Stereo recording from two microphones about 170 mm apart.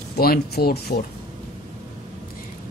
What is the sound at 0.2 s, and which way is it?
Speech, 65° left (ahead or behind).